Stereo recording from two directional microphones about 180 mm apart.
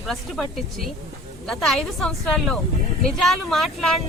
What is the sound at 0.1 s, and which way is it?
A woman's voice, centre (ahead or behind).